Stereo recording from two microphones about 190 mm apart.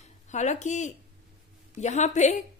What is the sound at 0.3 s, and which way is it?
A woman's voice, 40° left (ahead or behind).